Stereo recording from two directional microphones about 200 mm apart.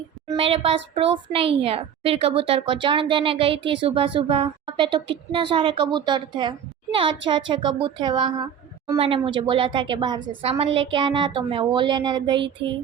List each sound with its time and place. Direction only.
0.3 s a child's voice: 30° right (ahead or behind)